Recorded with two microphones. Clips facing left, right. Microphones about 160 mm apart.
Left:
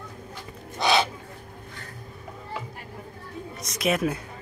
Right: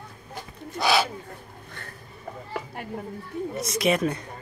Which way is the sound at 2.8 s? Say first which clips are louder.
Right 7 dB; 65° right (ahead or behind).